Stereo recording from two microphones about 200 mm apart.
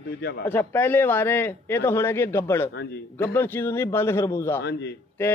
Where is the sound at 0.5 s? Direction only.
10° left (ahead or behind).